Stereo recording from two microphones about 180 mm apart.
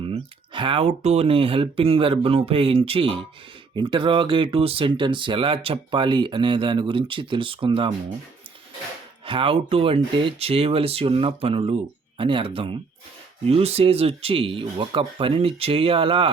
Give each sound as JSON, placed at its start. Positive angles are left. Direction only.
{"t": 0.0, "sound": "speech", "side_deg": -30}
{"t": 9.2, "sound": "speech", "side_deg": -30}